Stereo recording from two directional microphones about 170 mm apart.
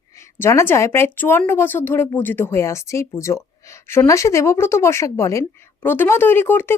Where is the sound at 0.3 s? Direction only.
15° left (ahead or behind).